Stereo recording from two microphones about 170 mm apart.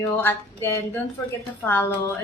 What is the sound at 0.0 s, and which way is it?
A woman's voice, 15° left (ahead or behind).